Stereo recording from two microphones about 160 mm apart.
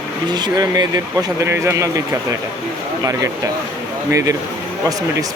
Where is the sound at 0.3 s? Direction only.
25° right (ahead or behind).